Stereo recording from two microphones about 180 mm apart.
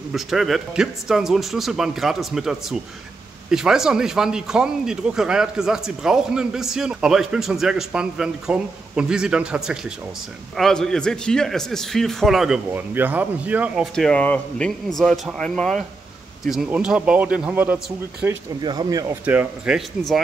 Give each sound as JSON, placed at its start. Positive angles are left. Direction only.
{"t": 0.1, "sound": "speech", "side_deg": 0}
{"t": 13.9, "sound": "speech", "side_deg": 5}
{"t": 18.6, "sound": "speech", "side_deg": -25}
{"t": 19.2, "sound": "speech", "side_deg": -5}